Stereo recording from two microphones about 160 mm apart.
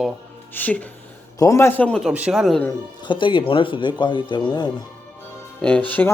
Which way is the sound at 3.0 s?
30° left (ahead or behind).